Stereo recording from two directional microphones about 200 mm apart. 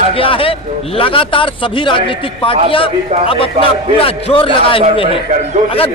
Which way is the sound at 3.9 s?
25° left (ahead or behind).